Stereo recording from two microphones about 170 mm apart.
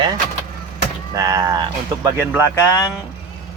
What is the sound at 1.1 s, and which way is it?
Speech, 20° right (ahead or behind).